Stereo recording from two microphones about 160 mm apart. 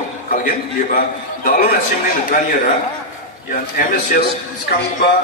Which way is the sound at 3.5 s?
55° left (ahead or behind).